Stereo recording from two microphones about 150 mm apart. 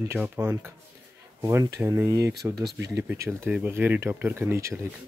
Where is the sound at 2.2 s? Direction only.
90° right.